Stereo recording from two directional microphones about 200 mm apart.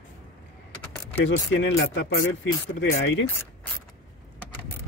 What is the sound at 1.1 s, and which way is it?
Speech, 65° left (ahead or behind).